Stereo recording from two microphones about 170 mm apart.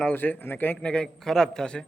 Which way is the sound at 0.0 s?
10° left (ahead or behind).